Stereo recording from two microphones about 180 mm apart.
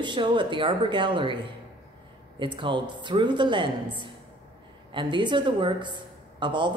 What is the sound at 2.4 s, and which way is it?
Speech, 25° right (ahead or behind).